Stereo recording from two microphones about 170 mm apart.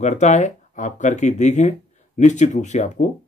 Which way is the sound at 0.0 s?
45° left (ahead or behind).